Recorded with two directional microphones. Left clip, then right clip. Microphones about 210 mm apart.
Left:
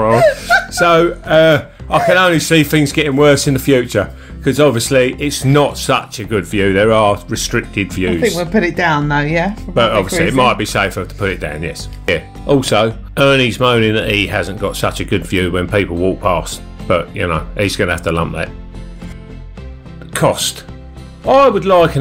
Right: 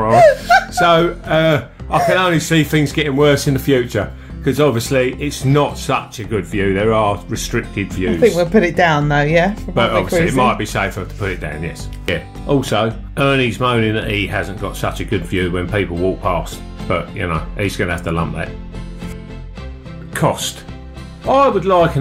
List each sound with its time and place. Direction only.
0.7 s speech: 25° left (ahead or behind)
8.4 s speech: centre (ahead or behind)
9.8 s speech: 25° left (ahead or behind)
10.3 s speech: 40° left (ahead or behind)
20.1 s speech: 40° left (ahead or behind)